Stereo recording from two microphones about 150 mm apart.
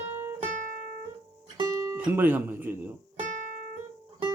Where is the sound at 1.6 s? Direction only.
20° right (ahead or behind).